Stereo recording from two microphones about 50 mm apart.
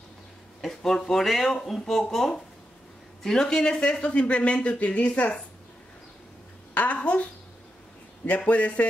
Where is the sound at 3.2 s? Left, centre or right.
Centre.